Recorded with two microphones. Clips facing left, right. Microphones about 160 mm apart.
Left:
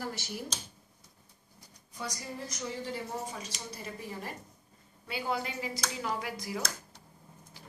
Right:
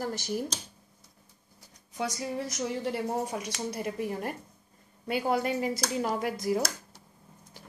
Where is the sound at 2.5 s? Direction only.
70° right (ahead or behind); by 6.6 s 45° right (ahead or behind).